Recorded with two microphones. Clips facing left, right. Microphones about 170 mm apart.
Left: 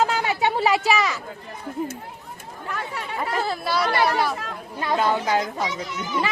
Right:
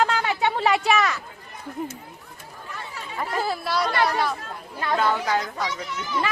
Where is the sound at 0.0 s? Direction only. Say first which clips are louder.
Left 1 dB; 5° left (ahead or behind).